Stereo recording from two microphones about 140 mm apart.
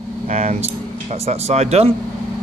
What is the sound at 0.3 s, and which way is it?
Speech, 55° right (ahead or behind).